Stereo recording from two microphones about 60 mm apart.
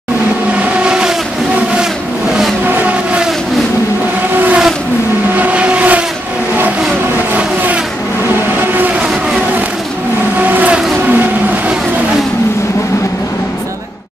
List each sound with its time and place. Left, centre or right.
0.8 s vehicle: centre
5.4 s vehicle: right
7.3 s vehicle: right